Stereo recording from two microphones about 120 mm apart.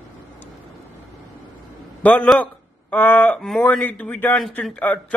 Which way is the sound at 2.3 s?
15° left (ahead or behind).